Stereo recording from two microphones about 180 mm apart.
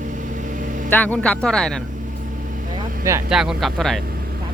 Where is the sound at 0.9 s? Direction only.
10° left (ahead or behind).